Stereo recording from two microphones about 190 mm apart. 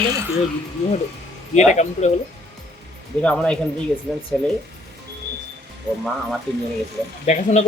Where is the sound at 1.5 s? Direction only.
40° left (ahead or behind).